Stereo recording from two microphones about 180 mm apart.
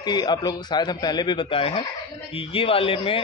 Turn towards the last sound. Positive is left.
turn(degrees=30)  # may be behind; listen again after turning